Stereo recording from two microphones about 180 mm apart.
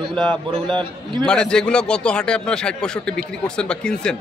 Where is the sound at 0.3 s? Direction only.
25° right (ahead or behind).